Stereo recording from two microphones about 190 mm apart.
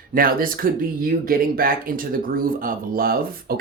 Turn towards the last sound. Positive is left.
turn(degrees=-50)  # may be behind; listen again after turning